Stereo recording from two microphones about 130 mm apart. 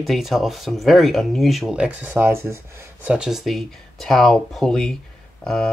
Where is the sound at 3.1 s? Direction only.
5° right (ahead or behind).